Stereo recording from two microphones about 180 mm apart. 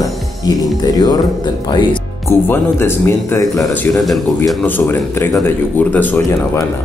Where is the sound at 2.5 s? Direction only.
15° left (ahead or behind).